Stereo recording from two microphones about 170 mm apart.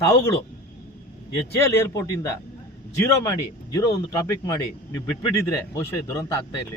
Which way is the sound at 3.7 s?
20° left (ahead or behind).